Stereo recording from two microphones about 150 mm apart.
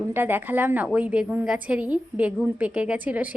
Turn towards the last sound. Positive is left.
turn(degrees=-10)  # may be behind; listen again after turning